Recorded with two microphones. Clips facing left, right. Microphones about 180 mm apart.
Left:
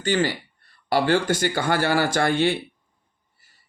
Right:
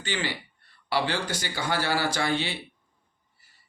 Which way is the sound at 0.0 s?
45° left (ahead or behind).